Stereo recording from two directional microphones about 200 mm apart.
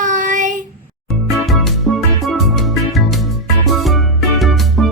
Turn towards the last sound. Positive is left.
turn(degrees=0)  # may be behind; listen again after turning